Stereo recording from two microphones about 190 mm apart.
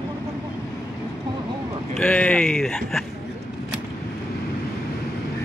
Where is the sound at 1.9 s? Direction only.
5° left (ahead or behind).